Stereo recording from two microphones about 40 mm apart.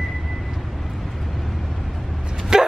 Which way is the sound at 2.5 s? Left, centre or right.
Centre.